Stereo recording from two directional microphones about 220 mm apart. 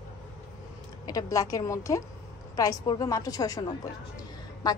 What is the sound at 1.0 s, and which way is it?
A woman's voice, 15° left (ahead or behind).